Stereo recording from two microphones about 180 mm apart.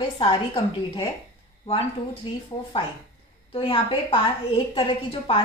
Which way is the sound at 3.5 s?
30° left (ahead or behind).